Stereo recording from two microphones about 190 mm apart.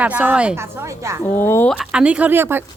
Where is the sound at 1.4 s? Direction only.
10° left (ahead or behind).